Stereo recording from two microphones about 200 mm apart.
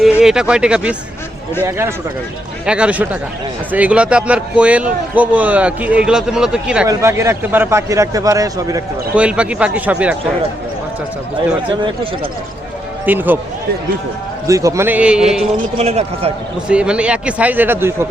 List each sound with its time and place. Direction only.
0.0 s a man's voice: 5° right (ahead or behind)
2.6 s a man's voice: 5° right (ahead or behind)
9.1 s a man's voice: 5° right (ahead or behind)
13.1 s a man's voice: 10° right (ahead or behind)
14.4 s a man's voice: 15° right (ahead or behind)
15.8 s a man's voice: 30° right (ahead or behind)
16.6 s a man's voice: 5° right (ahead or behind)